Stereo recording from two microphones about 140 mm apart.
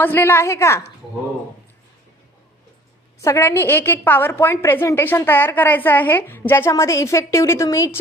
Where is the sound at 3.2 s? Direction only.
20° left (ahead or behind).